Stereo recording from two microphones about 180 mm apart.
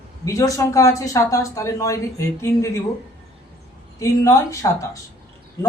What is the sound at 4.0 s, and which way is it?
Speech, 15° left (ahead or behind).